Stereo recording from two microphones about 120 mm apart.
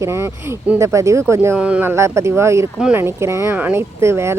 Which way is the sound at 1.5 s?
10° right (ahead or behind).